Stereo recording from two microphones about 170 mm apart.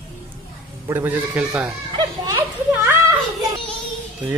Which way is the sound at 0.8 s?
10° right (ahead or behind).